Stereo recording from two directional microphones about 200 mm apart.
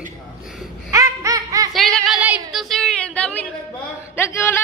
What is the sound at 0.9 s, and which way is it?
Baby laughter, 15° right (ahead or behind).